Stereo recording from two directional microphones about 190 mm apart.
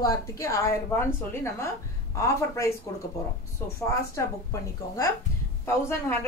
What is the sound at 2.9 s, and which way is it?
Speech, 15° left (ahead or behind).